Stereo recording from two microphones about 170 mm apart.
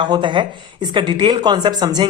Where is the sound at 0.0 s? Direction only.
25° right (ahead or behind).